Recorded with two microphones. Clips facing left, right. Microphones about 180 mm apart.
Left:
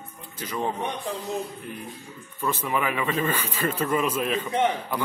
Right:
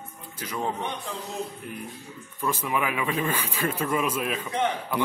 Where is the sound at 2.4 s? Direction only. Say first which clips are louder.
Left 1 dB; 10° right (ahead or behind).